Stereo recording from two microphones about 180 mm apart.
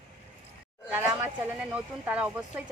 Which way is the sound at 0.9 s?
10° right (ahead or behind).